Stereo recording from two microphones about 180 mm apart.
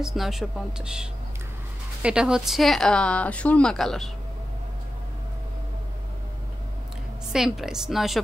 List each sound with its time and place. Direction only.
0.0 s speech: centre (ahead or behind)
2.0 s speech: 5° right (ahead or behind)
7.3 s speech: centre (ahead or behind)